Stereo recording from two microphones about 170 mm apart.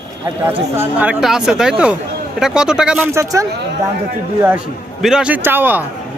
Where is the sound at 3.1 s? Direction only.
20° right (ahead or behind).